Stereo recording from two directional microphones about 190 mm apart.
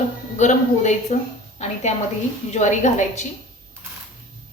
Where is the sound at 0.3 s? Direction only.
40° left (ahead or behind).